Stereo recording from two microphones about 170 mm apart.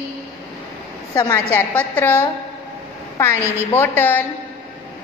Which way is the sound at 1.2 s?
20° left (ahead or behind).